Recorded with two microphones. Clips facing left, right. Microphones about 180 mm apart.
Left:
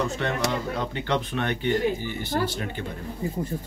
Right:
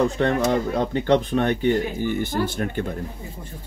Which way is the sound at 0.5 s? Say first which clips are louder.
Right 7 dB; 40° right (ahead or behind).